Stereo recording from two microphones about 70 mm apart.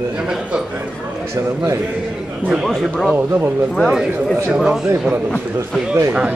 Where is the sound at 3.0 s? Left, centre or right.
Right.